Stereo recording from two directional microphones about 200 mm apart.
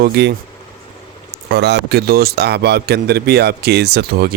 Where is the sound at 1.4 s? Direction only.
55° right (ahead or behind).